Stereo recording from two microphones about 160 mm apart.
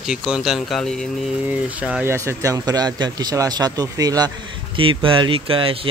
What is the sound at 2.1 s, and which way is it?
Speech, 15° right (ahead or behind).